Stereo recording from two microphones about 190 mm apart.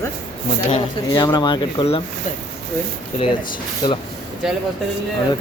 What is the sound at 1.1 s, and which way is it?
Speech, 20° left (ahead or behind).